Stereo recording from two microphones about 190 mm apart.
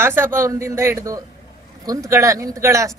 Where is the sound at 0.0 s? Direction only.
10° right (ahead or behind).